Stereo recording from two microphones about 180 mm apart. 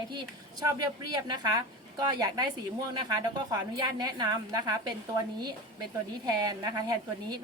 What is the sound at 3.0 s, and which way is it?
A woman's voice, 20° right (ahead or behind).